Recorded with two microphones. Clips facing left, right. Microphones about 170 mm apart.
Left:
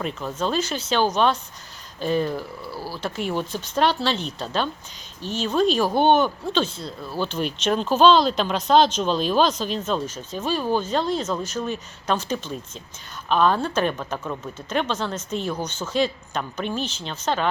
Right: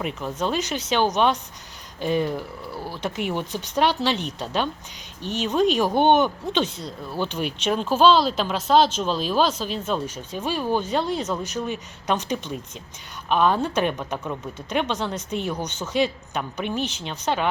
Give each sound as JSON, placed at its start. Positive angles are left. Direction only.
{"t": 0.0, "sound": "speech", "side_deg": -15}